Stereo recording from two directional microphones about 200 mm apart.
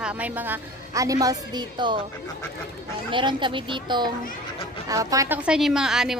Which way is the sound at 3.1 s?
25° right (ahead or behind).